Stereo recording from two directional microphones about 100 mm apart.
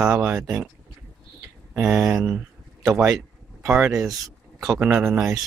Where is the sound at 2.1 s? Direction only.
15° right (ahead or behind).